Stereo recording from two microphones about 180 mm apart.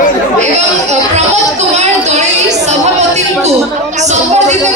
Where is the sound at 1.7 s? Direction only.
40° right (ahead or behind).